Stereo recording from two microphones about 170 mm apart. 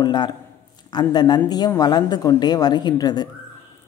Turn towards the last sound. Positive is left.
turn(degrees=25)  # may be behind; listen again after turning